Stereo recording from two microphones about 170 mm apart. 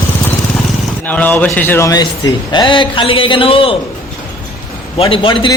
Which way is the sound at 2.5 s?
30° left (ahead or behind).